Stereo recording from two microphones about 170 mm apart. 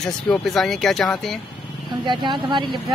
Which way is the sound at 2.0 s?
25° right (ahead or behind).